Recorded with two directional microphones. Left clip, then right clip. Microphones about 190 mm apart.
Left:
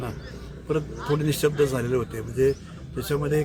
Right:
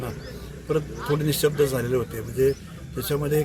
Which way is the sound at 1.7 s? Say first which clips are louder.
Right 1 dB; 5° left (ahead or behind).